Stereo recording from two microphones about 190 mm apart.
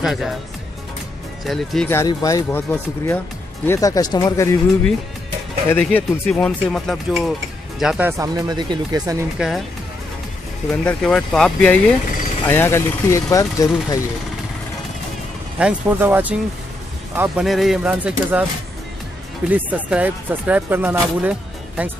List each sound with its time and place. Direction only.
0.0 s speech: centre (ahead or behind)
1.4 s speech: centre (ahead or behind)
1.9 s speech: 15° left (ahead or behind); by 8.1 s 5° right (ahead or behind)
8.2 s speech: 20° right (ahead or behind)
10.9 s speech: 5° left (ahead or behind)
15.6 s speech: 10° right (ahead or behind)
19.5 s speech: 5° right (ahead or behind)